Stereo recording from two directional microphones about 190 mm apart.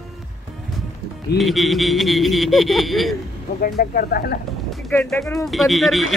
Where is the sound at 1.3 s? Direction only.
Centre (ahead or behind).